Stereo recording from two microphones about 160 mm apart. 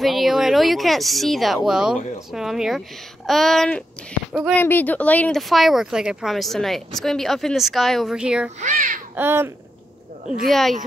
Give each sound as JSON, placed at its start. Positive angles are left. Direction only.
{"t": 0.0, "sound": "speech", "side_deg": 0}
{"t": 4.6, "sound": "speech", "side_deg": 10}
{"t": 8.5, "sound": "a child's voice", "side_deg": -50}
{"t": 9.1, "sound": "speech", "side_deg": -15}
{"t": 10.3, "sound": "speech", "side_deg": 0}